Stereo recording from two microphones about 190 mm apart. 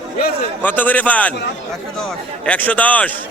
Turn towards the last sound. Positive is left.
turn(degrees=10)  # may be behind; listen again after turning